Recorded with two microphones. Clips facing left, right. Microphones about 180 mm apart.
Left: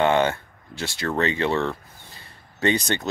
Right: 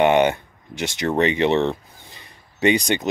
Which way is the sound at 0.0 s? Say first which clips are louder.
Right 4 dB; 20° right (ahead or behind).